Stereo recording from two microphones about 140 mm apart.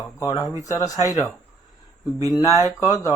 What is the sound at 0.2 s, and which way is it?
Speech, 25° left (ahead or behind).